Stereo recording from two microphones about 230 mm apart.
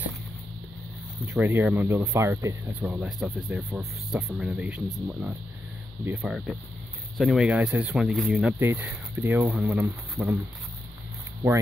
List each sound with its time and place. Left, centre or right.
1.3 s speech: centre
6.0 s speech: centre